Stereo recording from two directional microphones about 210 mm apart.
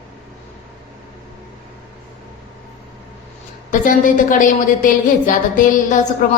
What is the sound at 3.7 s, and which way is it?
A woman's voice, 40° left (ahead or behind).